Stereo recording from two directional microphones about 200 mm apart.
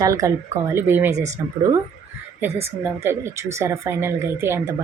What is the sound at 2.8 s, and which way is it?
A woman's voice, 10° right (ahead or behind).